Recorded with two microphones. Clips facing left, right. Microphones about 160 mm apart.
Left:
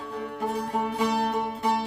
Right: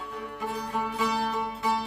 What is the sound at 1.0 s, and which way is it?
Music, 25° left (ahead or behind).